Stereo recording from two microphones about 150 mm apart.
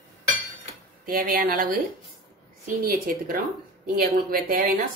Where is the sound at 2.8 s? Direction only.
70° right (ahead or behind).